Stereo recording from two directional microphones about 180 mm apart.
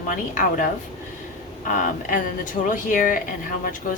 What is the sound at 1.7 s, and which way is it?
Speech, 50° left (ahead or behind).